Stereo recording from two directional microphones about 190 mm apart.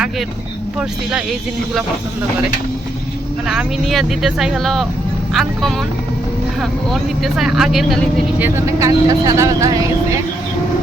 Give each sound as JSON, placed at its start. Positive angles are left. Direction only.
{"t": 3.4, "sound": "speech", "side_deg": -5}
{"t": 8.4, "sound": "speech", "side_deg": -15}